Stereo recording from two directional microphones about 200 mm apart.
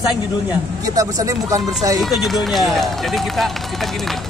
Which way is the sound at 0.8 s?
15° right (ahead or behind).